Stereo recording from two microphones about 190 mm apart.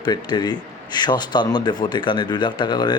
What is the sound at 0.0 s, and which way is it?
A man's voice, 25° left (ahead or behind).